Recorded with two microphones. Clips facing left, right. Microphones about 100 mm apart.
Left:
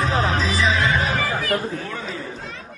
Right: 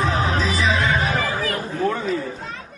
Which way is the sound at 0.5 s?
45° right (ahead or behind).